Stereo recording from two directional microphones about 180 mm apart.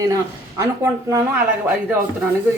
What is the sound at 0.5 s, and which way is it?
Speech, 15° right (ahead or behind).